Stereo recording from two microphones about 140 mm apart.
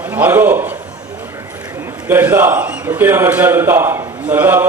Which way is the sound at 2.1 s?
15° right (ahead or behind).